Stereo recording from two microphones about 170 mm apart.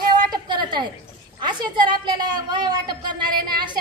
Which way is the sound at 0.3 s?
25° right (ahead or behind).